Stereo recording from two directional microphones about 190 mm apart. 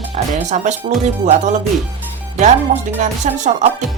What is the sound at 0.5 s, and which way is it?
Speech, 40° right (ahead or behind).